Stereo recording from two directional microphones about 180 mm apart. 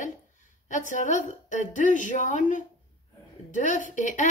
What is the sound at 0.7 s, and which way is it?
A woman's voice, 45° left (ahead or behind).